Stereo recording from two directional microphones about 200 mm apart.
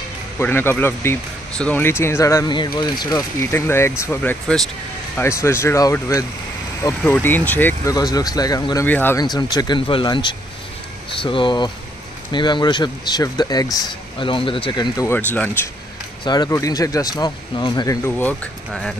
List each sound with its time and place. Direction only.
0.4 s speech: 10° left (ahead or behind)